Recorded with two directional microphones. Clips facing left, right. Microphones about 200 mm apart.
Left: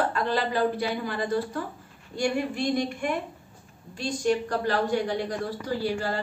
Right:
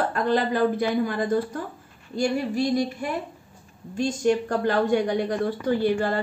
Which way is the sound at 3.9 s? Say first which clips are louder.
Right 4 dB; 45° right (ahead or behind).